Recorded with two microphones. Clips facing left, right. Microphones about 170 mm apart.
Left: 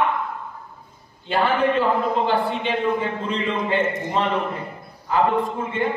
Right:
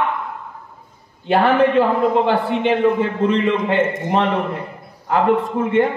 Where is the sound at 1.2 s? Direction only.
65° right (ahead or behind).